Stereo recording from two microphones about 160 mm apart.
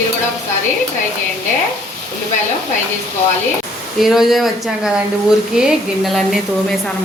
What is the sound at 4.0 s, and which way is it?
Speech, centre (ahead or behind).